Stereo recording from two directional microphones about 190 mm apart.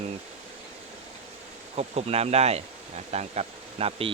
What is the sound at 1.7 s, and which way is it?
Speech, 35° right (ahead or behind).